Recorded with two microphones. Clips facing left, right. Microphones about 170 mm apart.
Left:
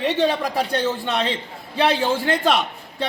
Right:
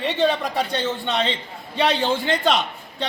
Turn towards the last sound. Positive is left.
turn(degrees=5)  # may be behind; listen again after turning